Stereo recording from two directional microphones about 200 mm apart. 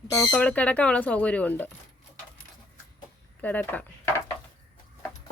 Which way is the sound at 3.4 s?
10° left (ahead or behind).